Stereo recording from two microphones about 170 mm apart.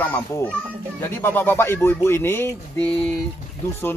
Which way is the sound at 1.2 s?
10° left (ahead or behind).